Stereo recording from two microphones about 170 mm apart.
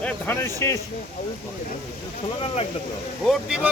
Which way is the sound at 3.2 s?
5° right (ahead or behind).